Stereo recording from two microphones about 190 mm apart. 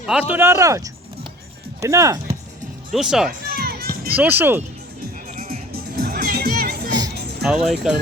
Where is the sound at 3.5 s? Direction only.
50° right (ahead or behind).